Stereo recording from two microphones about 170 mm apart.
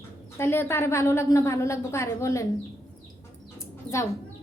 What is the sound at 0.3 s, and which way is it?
A woman's voice, 15° left (ahead or behind).